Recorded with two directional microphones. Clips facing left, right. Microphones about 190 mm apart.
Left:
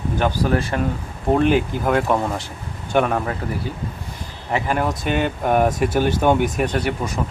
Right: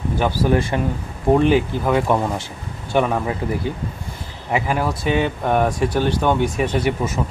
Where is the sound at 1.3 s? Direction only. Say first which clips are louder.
Right 2 dB; centre (ahead or behind).